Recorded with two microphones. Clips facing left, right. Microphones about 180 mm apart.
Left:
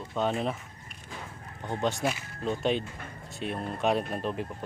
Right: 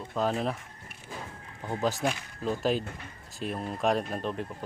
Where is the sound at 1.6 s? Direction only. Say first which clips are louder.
Even; 5° right (ahead or behind).